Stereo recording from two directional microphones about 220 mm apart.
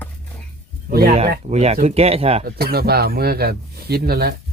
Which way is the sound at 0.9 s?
45° right (ahead or behind).